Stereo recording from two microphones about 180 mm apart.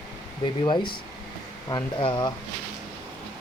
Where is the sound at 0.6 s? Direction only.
25° left (ahead or behind).